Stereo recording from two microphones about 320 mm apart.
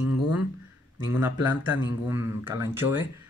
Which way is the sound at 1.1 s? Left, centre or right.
Centre.